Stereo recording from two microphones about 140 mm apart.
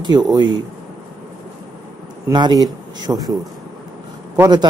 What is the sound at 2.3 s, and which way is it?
Speech, 30° right (ahead or behind).